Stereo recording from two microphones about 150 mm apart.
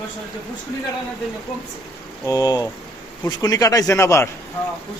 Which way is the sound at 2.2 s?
25° left (ahead or behind).